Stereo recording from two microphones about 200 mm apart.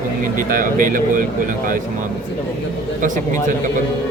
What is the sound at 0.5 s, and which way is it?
Speech, 40° right (ahead or behind).